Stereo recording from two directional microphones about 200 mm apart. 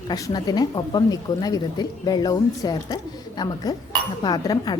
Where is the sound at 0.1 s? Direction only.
20° left (ahead or behind).